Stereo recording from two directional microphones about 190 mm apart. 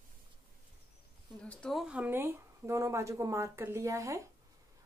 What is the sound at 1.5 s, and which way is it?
Speech, 5° left (ahead or behind).